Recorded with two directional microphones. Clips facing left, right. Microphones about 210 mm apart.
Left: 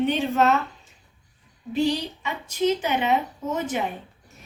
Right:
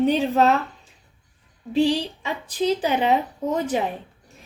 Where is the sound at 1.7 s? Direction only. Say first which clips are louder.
Right 3 dB; 30° right (ahead or behind).